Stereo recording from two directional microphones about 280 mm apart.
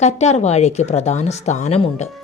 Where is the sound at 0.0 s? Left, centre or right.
Left.